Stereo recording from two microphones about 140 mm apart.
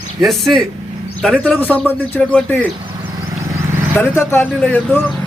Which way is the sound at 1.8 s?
10° left (ahead or behind).